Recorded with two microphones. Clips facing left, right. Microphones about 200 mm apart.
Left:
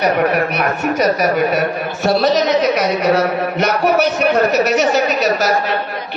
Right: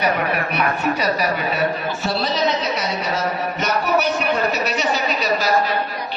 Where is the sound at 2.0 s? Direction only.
70° left (ahead or behind).